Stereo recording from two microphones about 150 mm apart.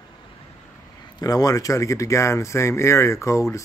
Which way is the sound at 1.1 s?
25° left (ahead or behind).